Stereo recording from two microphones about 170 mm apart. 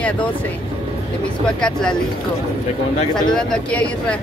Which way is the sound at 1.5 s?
5° left (ahead or behind).